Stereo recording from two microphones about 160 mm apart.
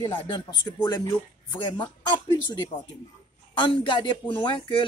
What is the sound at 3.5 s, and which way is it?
Speech, 30° left (ahead or behind).